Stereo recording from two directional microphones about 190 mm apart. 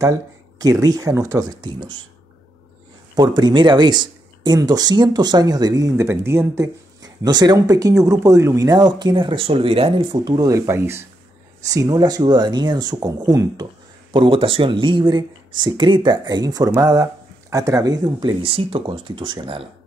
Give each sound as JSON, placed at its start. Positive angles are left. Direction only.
{"t": 0.6, "sound": "speech", "side_deg": -20}
{"t": 3.2, "sound": "speech", "side_deg": -25}